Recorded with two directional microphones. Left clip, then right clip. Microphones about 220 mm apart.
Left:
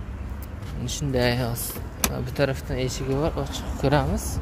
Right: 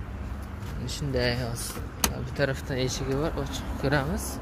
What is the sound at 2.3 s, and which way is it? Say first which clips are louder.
A man's voice: left 4 dB; 10° left (ahead or behind).